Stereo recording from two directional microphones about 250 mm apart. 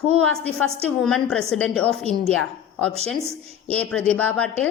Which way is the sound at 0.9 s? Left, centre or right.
Centre.